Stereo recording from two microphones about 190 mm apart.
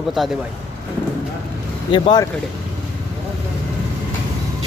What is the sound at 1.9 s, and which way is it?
Speech, 25° left (ahead or behind).